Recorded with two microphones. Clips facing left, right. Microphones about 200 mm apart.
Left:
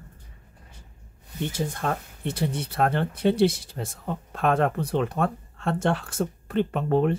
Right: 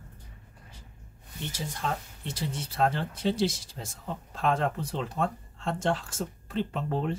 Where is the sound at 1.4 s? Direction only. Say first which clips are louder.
Left 6 dB; 55° left (ahead or behind).